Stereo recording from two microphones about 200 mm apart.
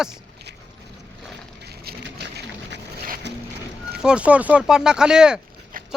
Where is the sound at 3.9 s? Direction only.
5° right (ahead or behind).